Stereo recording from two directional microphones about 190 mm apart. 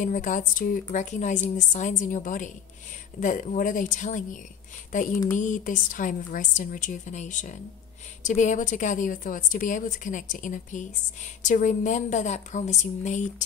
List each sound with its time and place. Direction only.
0.0 s a woman's voice: 45° left (ahead or behind)